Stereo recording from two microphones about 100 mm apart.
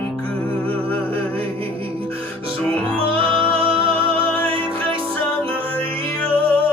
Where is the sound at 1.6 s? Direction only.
65° right (ahead or behind).